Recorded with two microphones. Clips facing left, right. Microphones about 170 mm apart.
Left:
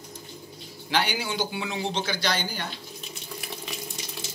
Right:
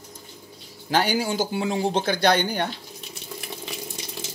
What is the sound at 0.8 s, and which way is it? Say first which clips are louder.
Speech: right 5 dB; 40° right (ahead or behind).